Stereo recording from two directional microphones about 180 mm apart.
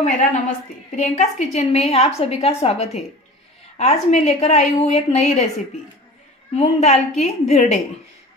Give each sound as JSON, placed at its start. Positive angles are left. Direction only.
{"t": 0.0, "sound": "a woman's voice", "side_deg": 45}
{"t": 6.5, "sound": "a woman's voice", "side_deg": 35}